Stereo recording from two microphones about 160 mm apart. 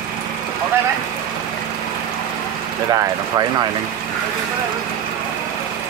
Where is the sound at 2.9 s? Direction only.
20° right (ahead or behind).